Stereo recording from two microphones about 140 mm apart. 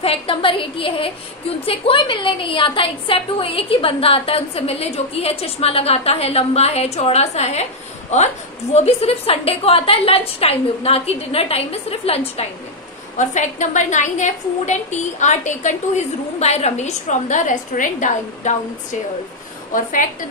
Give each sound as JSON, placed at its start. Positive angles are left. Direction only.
{"t": 0.0, "sound": "a woman's voice", "side_deg": 45}
{"t": 8.7, "sound": "a woman's voice", "side_deg": 45}
{"t": 13.2, "sound": "a woman's voice", "side_deg": 60}